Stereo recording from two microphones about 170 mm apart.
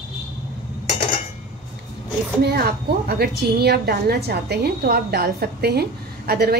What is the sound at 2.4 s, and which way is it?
A woman's voice, 70° right (ahead or behind).